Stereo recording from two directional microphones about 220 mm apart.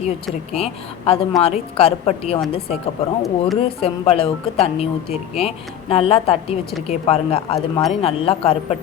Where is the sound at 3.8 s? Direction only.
25° left (ahead or behind).